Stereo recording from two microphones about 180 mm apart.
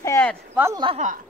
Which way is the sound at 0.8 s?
40° right (ahead or behind).